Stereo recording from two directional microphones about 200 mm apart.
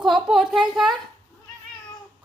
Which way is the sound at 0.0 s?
Centre (ahead or behind).